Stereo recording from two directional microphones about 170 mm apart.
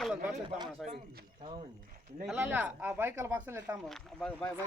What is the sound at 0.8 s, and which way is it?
Speech, centre (ahead or behind).